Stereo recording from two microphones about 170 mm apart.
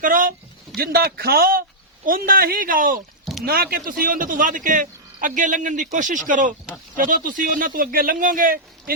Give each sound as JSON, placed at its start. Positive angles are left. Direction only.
{"t": 0.0, "sound": "speech", "side_deg": -55}
{"t": 0.8, "sound": "speech", "side_deg": -65}
{"t": 3.4, "sound": "speech", "side_deg": -65}